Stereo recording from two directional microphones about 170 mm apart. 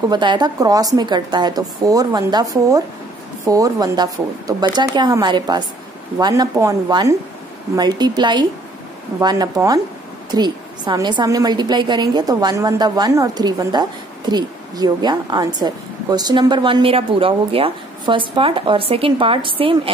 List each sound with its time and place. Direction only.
0.1 s a woman's voice: 25° right (ahead or behind)